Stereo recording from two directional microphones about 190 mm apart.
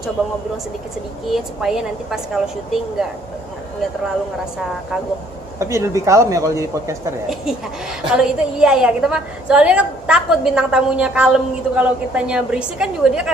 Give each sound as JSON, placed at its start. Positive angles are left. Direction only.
{"t": 1.3, "sound": "a woman's voice", "side_deg": 0}
{"t": 5.5, "sound": "speech", "side_deg": -15}
{"t": 8.0, "sound": "a woman's voice", "side_deg": -5}